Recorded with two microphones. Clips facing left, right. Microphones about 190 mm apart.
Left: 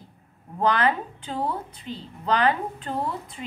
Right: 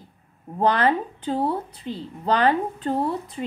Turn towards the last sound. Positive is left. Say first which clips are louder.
# right 5 dB
turn(degrees=-35)  # may be behind; listen again after turning